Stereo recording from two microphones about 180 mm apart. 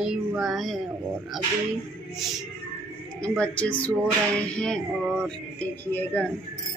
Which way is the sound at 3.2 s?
5° left (ahead or behind).